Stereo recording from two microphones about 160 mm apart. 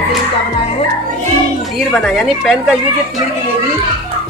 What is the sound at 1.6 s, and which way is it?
A child's voice, centre (ahead or behind).